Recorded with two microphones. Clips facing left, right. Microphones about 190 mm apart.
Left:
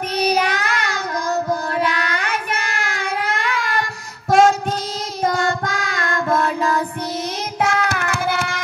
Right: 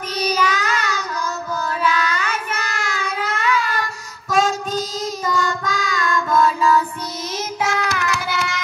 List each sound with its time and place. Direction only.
0.2 s child singing: 60° left (ahead or behind)
4.3 s a sound: 60° left (ahead or behind)
5.2 s child singing: 60° left (ahead or behind)